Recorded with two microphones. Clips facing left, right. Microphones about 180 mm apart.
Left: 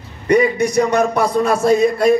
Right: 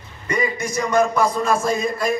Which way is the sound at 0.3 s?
65° left (ahead or behind).